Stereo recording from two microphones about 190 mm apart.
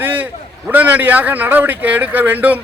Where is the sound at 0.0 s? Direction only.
10° right (ahead or behind).